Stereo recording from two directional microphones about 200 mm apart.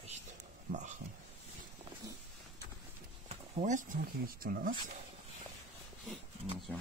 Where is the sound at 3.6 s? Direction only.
40° right (ahead or behind).